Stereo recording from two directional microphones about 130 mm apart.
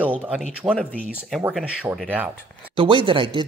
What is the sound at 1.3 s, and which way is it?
Speech, centre (ahead or behind).